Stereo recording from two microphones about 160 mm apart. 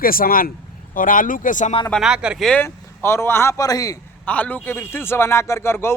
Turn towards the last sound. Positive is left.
turn(degrees=15)  # may be behind; listen again after turning